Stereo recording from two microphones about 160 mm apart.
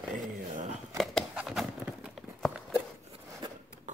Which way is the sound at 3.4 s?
30° right (ahead or behind).